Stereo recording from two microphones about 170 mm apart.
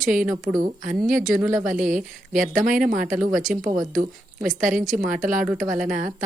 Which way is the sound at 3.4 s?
Centre (ahead or behind).